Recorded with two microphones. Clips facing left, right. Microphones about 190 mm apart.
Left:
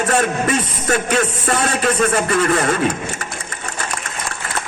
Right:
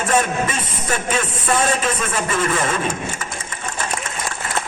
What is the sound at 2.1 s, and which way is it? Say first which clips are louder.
Speech: left 4 dB; 65° left (ahead or behind).